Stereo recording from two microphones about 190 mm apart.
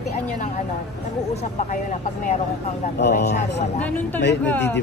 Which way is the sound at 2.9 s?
60° left (ahead or behind).